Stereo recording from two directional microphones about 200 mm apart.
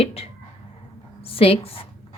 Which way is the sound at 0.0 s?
30° left (ahead or behind).